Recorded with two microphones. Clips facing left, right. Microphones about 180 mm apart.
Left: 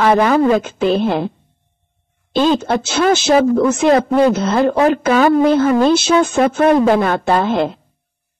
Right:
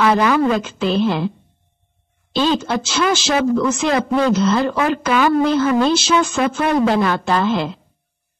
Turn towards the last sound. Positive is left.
turn(degrees=50)  # may be behind; listen again after turning